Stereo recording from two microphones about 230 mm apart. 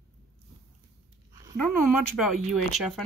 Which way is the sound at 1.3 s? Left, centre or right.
Centre.